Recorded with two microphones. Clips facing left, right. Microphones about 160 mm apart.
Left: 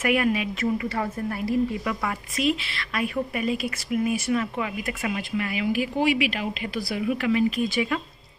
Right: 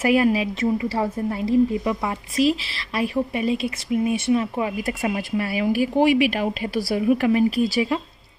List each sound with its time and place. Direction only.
0.0 s a woman's voice: 30° right (ahead or behind)